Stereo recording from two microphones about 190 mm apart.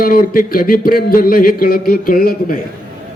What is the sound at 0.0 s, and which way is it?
A man's voice, 50° left (ahead or behind).